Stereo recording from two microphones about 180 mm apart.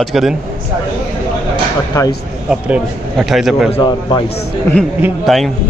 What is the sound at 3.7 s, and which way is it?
Speech, 25° left (ahead or behind).